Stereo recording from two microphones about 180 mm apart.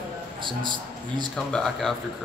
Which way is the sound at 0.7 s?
25° right (ahead or behind).